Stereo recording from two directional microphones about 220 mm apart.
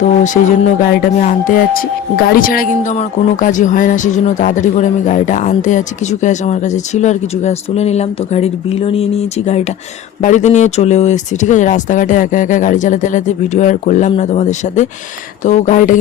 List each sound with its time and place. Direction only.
0.0 s speech: 35° left (ahead or behind)